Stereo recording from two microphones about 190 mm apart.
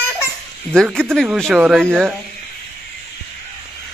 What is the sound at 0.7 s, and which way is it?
Speech, 5° left (ahead or behind).